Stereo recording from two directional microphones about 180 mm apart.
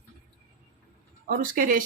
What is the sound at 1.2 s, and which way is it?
Speech, 50° right (ahead or behind).